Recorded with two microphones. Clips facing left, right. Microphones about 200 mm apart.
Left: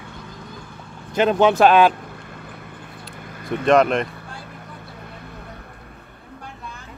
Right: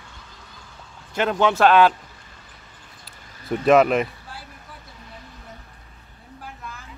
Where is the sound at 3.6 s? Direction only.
5° right (ahead or behind).